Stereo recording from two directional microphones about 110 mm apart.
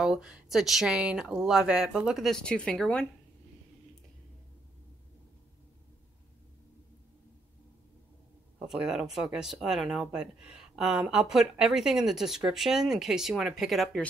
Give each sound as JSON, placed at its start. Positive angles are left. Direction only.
{"t": 0.0, "sound": "speech", "side_deg": -5}
{"t": 8.5, "sound": "speech", "side_deg": -10}